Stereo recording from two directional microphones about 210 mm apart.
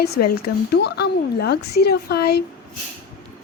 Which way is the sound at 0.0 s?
50° left (ahead or behind).